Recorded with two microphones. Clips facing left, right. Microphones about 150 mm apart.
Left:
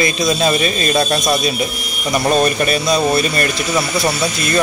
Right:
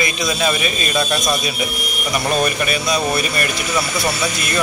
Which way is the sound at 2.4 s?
35° left (ahead or behind).